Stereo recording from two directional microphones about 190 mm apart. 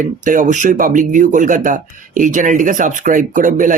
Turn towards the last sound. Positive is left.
turn(degrees=-45)  # may be behind; listen again after turning